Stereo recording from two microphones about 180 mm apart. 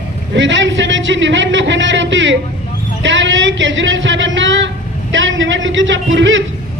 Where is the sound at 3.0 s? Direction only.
90° right.